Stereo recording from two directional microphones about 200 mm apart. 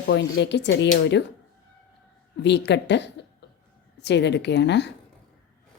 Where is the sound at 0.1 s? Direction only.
60° left (ahead or behind).